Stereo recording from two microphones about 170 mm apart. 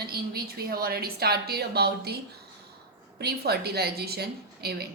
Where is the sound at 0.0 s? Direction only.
65° right (ahead or behind).